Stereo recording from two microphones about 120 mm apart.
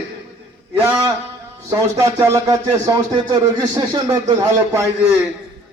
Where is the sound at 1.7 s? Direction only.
25° right (ahead or behind).